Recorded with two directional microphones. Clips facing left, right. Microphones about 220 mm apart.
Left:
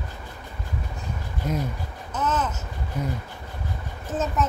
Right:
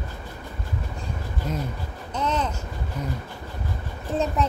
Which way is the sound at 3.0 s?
10° left (ahead or behind).